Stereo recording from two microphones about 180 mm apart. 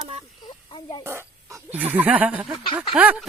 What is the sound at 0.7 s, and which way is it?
Speech, 25° left (ahead or behind).